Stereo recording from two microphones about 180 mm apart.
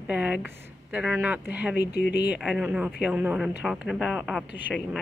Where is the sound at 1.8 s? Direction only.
65° left (ahead or behind).